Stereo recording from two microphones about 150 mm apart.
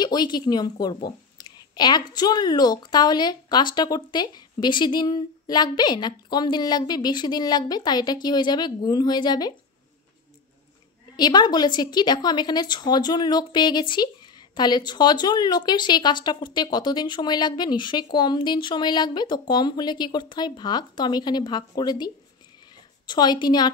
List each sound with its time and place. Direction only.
0.0 s a woman's voice: 30° left (ahead or behind)
11.1 s a woman's voice: 30° left (ahead or behind)